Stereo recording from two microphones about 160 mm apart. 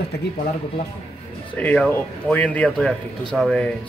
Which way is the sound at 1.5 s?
10° left (ahead or behind).